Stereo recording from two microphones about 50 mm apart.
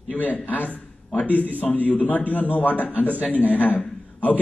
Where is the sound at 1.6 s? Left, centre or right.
Left.